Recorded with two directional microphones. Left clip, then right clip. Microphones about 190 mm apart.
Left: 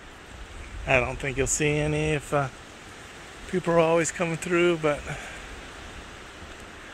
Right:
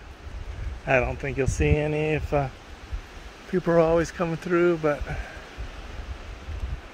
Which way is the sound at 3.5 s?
30° right (ahead or behind).